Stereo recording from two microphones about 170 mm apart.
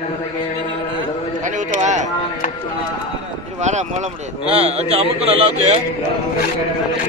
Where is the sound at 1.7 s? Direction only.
45° right (ahead or behind).